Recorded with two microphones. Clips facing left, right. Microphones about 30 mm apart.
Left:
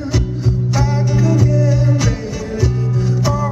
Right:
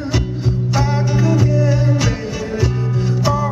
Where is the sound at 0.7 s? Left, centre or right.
Centre.